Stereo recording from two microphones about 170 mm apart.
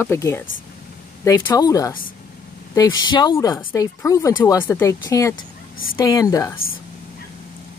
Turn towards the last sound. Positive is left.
turn(degrees=20)  # may be behind; listen again after turning